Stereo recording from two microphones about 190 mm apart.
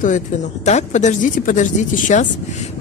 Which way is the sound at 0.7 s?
35° left (ahead or behind).